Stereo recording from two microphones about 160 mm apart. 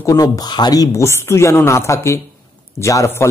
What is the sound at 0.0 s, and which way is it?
A man's voice, 20° left (ahead or behind).